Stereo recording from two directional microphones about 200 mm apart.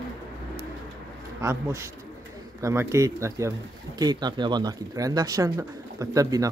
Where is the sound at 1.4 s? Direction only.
15° right (ahead or behind).